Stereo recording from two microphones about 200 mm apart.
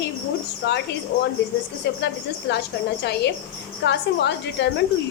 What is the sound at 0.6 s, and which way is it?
Speech, 55° left (ahead or behind).